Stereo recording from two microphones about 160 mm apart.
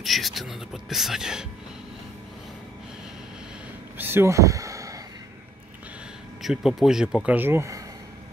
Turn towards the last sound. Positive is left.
turn(degrees=-15)  # may be behind; listen again after turning